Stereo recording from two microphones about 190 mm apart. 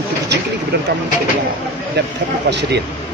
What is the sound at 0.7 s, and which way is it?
Speech, 60° right (ahead or behind).